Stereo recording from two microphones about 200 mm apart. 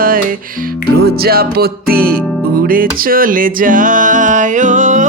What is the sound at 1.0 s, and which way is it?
Music, 50° right (ahead or behind).